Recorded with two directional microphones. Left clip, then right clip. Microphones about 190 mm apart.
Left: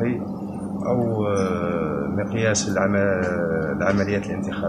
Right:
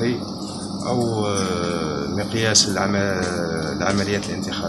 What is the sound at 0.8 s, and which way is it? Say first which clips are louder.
Speech: even; centre (ahead or behind).